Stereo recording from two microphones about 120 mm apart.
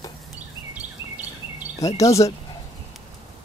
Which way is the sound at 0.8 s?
15° right (ahead or behind).